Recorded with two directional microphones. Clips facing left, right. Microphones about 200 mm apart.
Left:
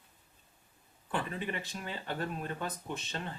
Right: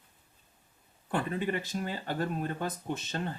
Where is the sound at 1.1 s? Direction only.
40° right (ahead or behind).